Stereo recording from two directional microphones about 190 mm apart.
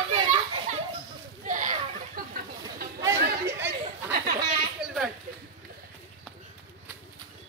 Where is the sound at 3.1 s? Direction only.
55° right (ahead or behind).